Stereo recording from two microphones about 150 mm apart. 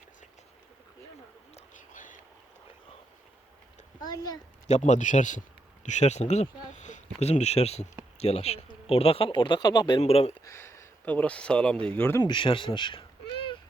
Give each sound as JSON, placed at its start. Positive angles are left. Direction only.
{"t": 1.5, "sound": "whispering", "side_deg": 60}
{"t": 4.0, "sound": "a child's voice", "side_deg": 25}
{"t": 4.7, "sound": "speech", "side_deg": 55}
{"t": 10.0, "sound": "speech", "side_deg": 45}
{"t": 10.4, "sound": "speech", "side_deg": 20}
{"t": 12.2, "sound": "speech", "side_deg": 35}